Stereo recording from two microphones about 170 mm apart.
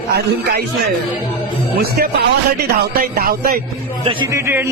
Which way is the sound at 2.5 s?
65° right (ahead or behind).